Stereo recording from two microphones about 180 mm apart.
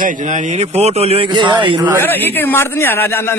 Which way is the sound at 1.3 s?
25° right (ahead or behind).